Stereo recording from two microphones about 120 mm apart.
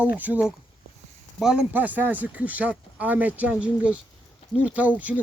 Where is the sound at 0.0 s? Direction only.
15° right (ahead or behind).